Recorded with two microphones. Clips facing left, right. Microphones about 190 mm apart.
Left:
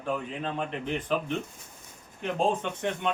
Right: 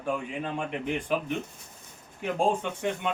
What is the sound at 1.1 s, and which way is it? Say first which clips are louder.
Speech: even; 10° right (ahead or behind).